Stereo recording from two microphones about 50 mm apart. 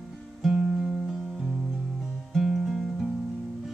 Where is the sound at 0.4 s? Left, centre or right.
Centre.